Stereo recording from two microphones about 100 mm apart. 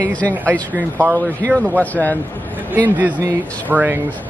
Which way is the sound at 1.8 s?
15° left (ahead or behind).